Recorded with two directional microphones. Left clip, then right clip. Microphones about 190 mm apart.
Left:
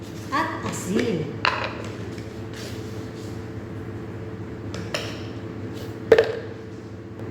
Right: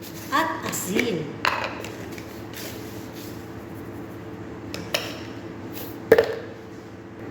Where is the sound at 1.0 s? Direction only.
Centre (ahead or behind).